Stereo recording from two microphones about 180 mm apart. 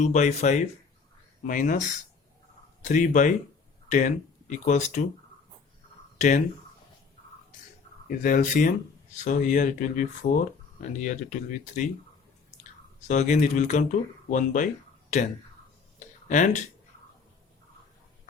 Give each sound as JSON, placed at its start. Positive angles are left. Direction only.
{"t": 0.0, "sound": "speech", "side_deg": 40}
{"t": 6.1, "sound": "speech", "side_deg": 40}
{"t": 8.0, "sound": "speech", "side_deg": 50}
{"t": 13.1, "sound": "speech", "side_deg": 40}
{"t": 16.0, "sound": "a sound", "side_deg": 40}